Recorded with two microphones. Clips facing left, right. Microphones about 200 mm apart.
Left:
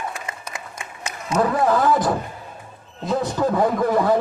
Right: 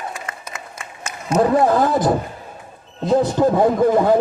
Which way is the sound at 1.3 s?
30° right (ahead or behind).